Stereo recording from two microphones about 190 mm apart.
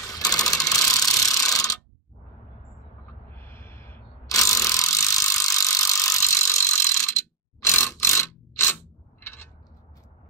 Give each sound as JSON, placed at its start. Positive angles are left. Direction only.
{"t": 0.0, "sound": "ratchet", "side_deg": 20}
{"t": 3.3, "sound": "mechanisms", "side_deg": 10}
{"t": 9.2, "sound": "a sound", "side_deg": 15}